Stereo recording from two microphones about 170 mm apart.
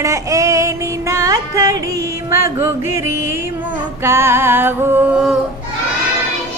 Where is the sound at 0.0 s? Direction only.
20° right (ahead or behind).